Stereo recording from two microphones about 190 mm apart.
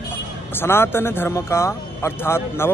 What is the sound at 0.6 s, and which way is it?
A man's voice, 10° left (ahead or behind).